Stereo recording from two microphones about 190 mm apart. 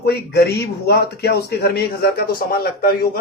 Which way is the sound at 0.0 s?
60° left (ahead or behind).